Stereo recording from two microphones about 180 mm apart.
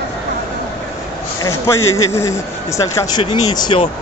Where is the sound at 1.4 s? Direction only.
15° left (ahead or behind).